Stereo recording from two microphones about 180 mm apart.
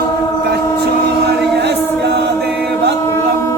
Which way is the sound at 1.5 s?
70° right (ahead or behind).